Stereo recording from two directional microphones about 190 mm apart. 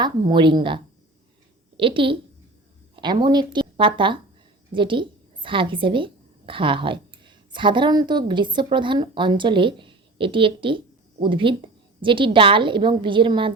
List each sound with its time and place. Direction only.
0.0 s a woman's voice: 25° right (ahead or behind)